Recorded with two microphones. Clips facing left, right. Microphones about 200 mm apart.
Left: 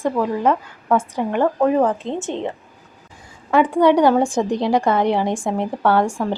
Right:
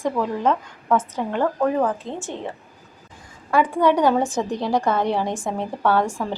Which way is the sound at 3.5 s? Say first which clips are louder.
Left 4 dB; 15° left (ahead or behind).